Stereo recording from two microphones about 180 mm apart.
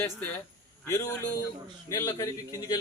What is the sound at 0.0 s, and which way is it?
A man's voice, 10° left (ahead or behind).